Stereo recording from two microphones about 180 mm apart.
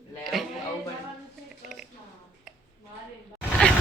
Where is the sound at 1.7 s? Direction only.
Centre (ahead or behind).